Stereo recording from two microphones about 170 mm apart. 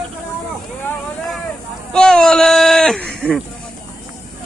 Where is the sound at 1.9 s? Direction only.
5° left (ahead or behind).